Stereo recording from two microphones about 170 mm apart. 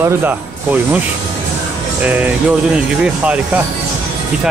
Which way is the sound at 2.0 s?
10° right (ahead or behind).